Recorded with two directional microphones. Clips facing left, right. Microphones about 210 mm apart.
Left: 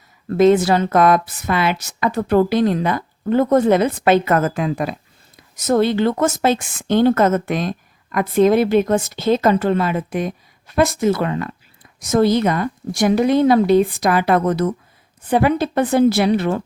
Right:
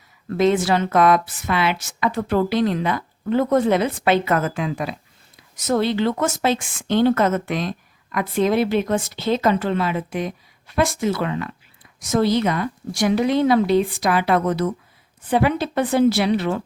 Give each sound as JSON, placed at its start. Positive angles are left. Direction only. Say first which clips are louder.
{"t": 0.3, "sound": "speech", "louder": "left 5 dB", "side_deg": 45}